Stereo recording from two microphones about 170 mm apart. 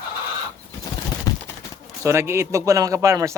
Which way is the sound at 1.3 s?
20° left (ahead or behind).